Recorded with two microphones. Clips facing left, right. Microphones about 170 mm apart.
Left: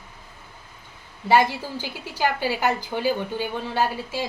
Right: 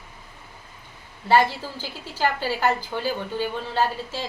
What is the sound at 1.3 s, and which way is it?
A woman's voice, 15° left (ahead or behind).